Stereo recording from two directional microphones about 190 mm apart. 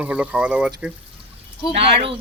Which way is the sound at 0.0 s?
5° right (ahead or behind).